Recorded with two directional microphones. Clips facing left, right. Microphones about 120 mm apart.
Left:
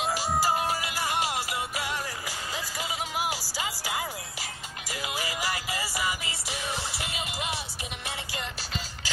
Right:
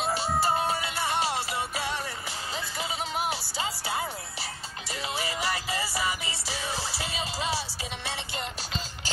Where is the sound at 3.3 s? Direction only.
30° right (ahead or behind).